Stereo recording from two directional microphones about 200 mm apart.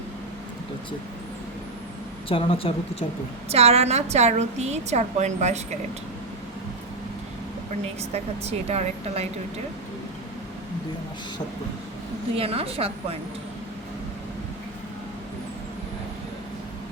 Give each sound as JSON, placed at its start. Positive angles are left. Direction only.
{"t": 2.3, "sound": "speech", "side_deg": 25}
{"t": 3.5, "sound": "a woman's voice", "side_deg": -30}
{"t": 8.1, "sound": "a woman's voice", "side_deg": -35}
{"t": 12.4, "sound": "a woman's voice", "side_deg": -30}